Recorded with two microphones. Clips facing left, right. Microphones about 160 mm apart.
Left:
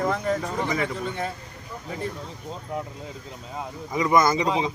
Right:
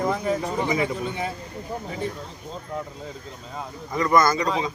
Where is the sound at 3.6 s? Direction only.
15° left (ahead or behind).